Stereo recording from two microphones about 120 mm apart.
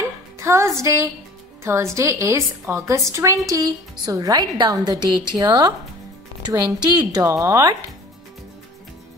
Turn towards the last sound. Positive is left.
turn(degrees=-25)  # may be behind; listen again after turning